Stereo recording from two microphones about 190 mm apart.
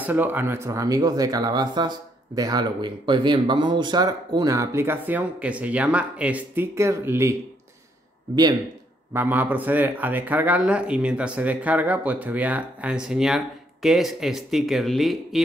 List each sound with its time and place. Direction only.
0.0 s speech: 10° right (ahead or behind)
9.1 s speech: 10° right (ahead or behind)